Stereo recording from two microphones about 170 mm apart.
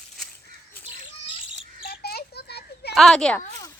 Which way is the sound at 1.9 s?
70° left (ahead or behind).